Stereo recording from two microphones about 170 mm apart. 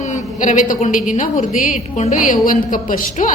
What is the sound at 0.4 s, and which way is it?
A woman's voice, 50° left (ahead or behind).